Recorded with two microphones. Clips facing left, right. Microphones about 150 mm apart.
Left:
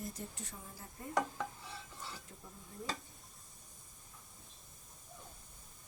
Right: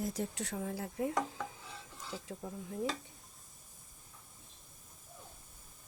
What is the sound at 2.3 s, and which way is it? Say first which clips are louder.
Speech: right 11 dB; 90° right.